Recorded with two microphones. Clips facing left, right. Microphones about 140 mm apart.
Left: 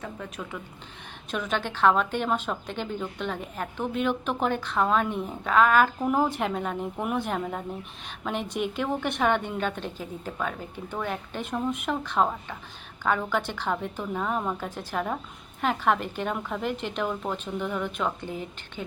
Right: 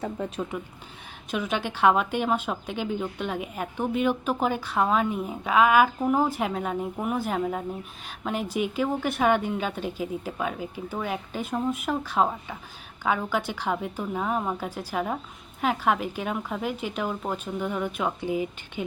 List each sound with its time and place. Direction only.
0.0 s a woman's voice: 30° right (ahead or behind)
1.3 s a woman's voice: 10° right (ahead or behind)